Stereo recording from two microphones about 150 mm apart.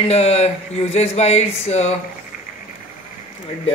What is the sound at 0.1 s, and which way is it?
Speech, 45° left (ahead or behind).